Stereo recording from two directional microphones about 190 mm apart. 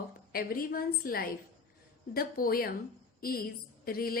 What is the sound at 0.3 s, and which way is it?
A woman's voice, 50° left (ahead or behind).